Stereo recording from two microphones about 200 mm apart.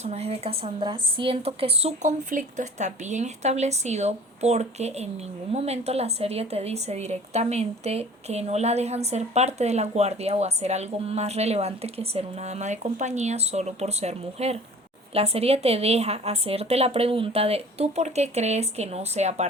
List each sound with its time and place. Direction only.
0.0 s a woman's voice: 35° right (ahead or behind)